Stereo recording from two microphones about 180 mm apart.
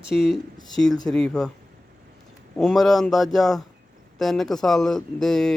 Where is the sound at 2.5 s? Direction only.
Centre (ahead or behind).